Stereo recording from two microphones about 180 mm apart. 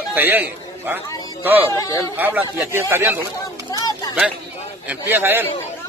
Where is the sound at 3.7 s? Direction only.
20° left (ahead or behind).